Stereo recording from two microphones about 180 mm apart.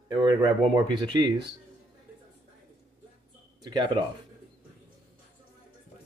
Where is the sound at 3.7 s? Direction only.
25° right (ahead or behind).